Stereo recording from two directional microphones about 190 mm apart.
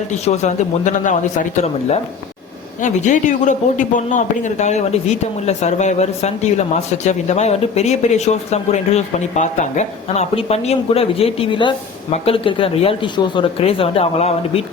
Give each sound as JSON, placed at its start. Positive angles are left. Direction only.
{"t": 0.1, "sound": "speech", "side_deg": 35}